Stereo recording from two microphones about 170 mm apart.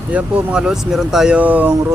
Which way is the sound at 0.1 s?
5° right (ahead or behind).